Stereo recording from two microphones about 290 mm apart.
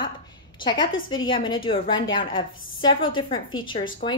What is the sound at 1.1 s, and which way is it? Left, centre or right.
A woman's voice, centre.